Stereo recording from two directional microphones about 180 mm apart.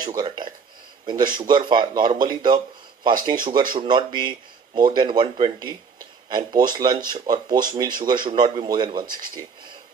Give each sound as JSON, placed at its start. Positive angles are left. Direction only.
{"t": 1.0, "sound": "speech", "side_deg": -25}